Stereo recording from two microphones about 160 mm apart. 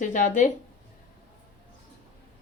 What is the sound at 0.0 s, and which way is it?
Speech, 50° left (ahead or behind).